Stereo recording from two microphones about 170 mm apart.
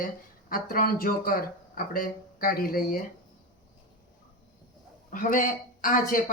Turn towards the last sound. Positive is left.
turn(degrees=55)  # may be behind; listen again after turning